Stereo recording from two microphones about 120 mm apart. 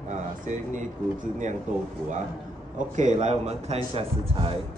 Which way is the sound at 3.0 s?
80° right.